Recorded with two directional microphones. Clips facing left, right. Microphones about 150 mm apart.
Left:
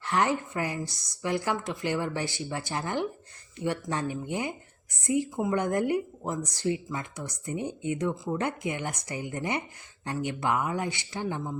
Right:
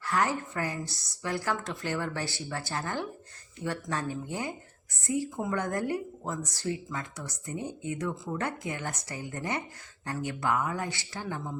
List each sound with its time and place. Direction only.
0.0 s a woman's voice: 20° left (ahead or behind)